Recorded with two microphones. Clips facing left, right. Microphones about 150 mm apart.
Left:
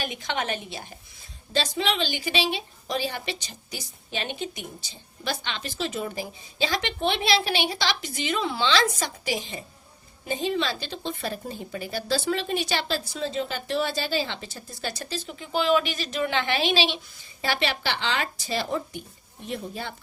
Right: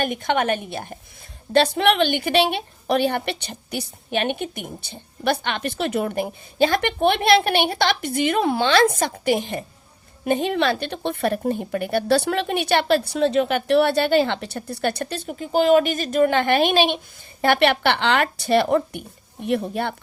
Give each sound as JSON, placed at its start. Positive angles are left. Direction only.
{"t": 0.0, "sound": "a woman's voice", "side_deg": -55}